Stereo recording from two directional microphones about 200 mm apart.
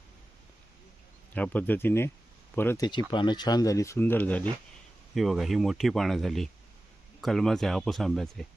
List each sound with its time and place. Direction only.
1.3 s speech: 10° left (ahead or behind)